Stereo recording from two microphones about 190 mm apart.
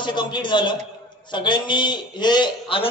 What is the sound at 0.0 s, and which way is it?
A man's voice, 25° left (ahead or behind).